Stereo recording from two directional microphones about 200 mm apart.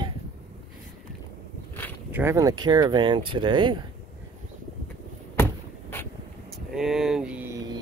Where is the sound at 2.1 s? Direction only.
15° right (ahead or behind).